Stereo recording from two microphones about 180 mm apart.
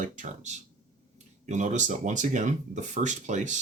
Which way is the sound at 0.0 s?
45° right (ahead or behind).